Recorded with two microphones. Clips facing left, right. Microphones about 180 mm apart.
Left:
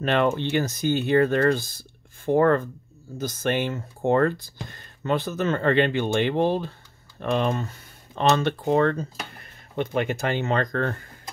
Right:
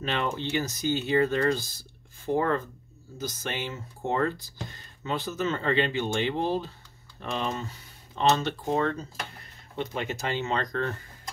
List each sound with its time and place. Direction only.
0.0 s speech: 55° left (ahead or behind)